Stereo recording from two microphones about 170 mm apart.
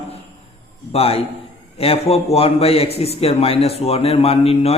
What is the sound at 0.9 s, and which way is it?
A man's voice, 35° left (ahead or behind).